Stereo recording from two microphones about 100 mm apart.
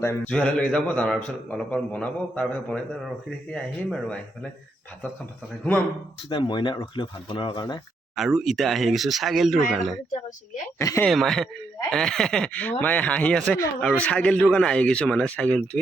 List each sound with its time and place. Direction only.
0.3 s a man's voice: 10° left (ahead or behind)
6.3 s speech: 50° left (ahead or behind)
8.1 s speech: centre (ahead or behind)
10.8 s speech: 30° left (ahead or behind)
11.1 s a man's voice: centre (ahead or behind)